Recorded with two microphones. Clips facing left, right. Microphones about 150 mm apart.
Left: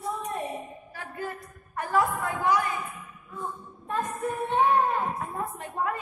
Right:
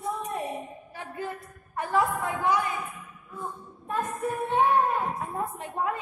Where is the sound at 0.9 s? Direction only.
20° right (ahead or behind).